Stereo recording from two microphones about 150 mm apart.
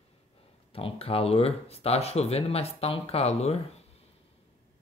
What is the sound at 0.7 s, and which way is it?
Speech, 40° left (ahead or behind).